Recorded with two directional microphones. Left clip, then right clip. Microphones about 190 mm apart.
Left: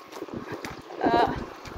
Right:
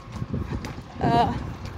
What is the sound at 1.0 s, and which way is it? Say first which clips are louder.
Boat: right 1 dB; 40° right (ahead or behind).